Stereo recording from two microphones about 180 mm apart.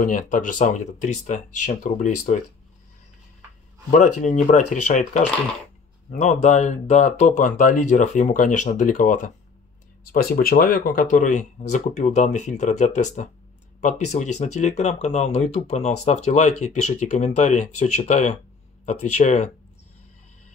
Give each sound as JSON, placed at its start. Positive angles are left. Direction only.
{"t": 0.0, "sound": "speech", "side_deg": 50}
{"t": 3.9, "sound": "speech", "side_deg": 45}
{"t": 10.1, "sound": "speech", "side_deg": 55}